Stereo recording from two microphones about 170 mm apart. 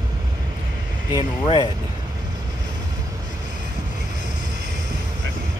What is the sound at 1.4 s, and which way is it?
Speech, 30° left (ahead or behind).